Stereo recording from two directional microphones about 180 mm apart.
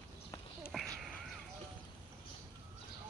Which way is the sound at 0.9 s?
Centre (ahead or behind).